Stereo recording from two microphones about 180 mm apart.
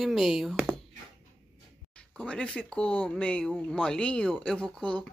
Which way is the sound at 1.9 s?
5° left (ahead or behind).